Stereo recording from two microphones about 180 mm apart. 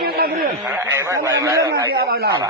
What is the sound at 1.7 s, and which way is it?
Speech, 65° right (ahead or behind).